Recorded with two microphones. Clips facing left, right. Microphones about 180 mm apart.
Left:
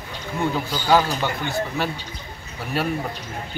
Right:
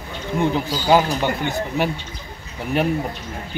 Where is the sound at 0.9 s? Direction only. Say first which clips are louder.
Right 2 dB; 15° right (ahead or behind).